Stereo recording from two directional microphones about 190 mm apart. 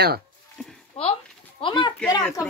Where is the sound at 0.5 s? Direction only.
Centre (ahead or behind).